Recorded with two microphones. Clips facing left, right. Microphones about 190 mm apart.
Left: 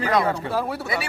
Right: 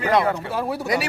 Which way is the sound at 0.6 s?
15° right (ahead or behind).